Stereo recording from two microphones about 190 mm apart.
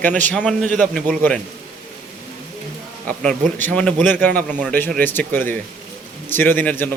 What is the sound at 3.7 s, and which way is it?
Speech, 5° left (ahead or behind).